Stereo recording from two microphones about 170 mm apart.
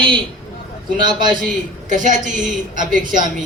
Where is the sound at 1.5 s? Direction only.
50° right (ahead or behind).